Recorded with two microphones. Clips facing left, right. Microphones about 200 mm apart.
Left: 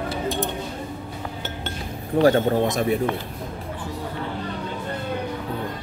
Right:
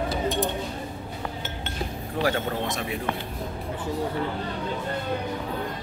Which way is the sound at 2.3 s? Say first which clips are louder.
Left 8 dB; 40° left (ahead or behind).